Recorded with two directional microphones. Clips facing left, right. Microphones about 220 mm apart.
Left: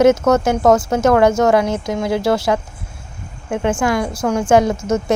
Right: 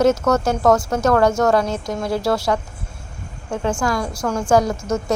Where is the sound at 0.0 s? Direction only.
20° left (ahead or behind).